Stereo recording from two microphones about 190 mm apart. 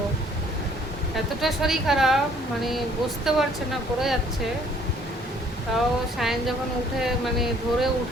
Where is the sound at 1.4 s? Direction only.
Centre (ahead or behind).